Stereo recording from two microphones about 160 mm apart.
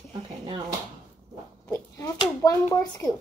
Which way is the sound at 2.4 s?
15° left (ahead or behind).